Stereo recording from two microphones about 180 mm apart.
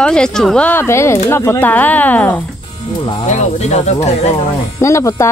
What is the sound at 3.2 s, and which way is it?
Speech, 40° left (ahead or behind).